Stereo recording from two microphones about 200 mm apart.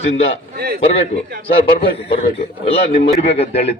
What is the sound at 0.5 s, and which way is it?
Speech, 50° right (ahead or behind).